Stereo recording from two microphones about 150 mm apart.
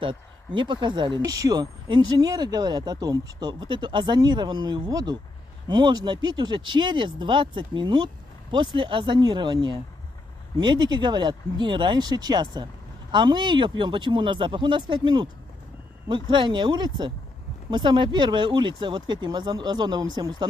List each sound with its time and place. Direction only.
0.0 s speech: 35° right (ahead or behind)